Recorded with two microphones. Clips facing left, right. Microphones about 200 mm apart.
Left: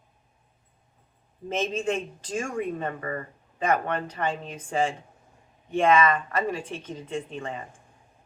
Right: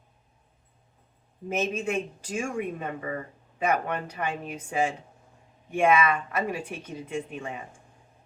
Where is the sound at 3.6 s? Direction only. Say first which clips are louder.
Left 1 dB; 10° right (ahead or behind).